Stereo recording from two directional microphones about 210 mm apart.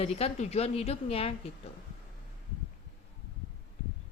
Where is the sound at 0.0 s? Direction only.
30° left (ahead or behind).